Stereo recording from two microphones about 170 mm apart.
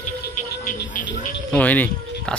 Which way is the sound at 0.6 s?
50° left (ahead or behind).